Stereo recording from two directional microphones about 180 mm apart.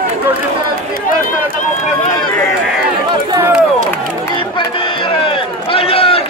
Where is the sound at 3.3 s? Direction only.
10° right (ahead or behind).